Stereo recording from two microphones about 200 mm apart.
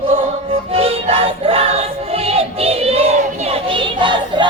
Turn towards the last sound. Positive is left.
turn(degrees=-25)  # may be behind; listen again after turning